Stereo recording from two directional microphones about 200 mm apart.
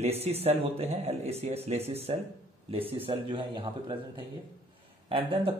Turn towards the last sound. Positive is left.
turn(degrees=-30)  # may be behind; listen again after turning